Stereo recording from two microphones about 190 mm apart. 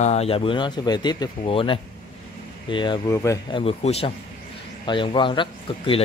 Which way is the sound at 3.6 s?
30° left (ahead or behind).